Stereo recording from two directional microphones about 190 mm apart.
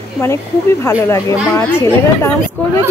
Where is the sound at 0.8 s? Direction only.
15° left (ahead or behind).